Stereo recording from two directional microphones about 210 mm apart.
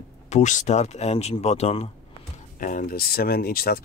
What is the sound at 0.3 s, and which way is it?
Speech, 35° left (ahead or behind).